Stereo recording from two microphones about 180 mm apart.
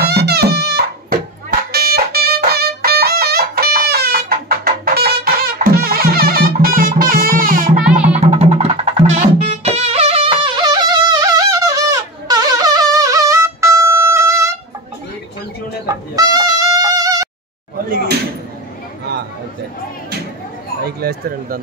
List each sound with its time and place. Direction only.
0.0 s music: 60° right (ahead or behind)
7.9 s music: 5° right (ahead or behind)
8.2 s music: 35° right (ahead or behind); by 14.5 s 15° right (ahead or behind)
15.9 s music: 20° right (ahead or behind)
20.8 s a sound: 60° right (ahead or behind)